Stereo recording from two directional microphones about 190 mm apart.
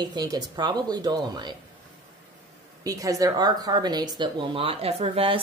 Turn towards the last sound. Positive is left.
turn(degrees=-30)  # may be behind; listen again after turning